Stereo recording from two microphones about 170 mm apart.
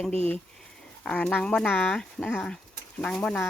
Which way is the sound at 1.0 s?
10° left (ahead or behind).